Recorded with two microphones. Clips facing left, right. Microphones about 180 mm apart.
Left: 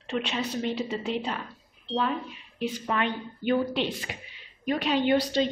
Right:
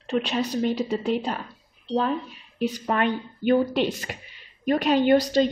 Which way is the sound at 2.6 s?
45° right (ahead or behind).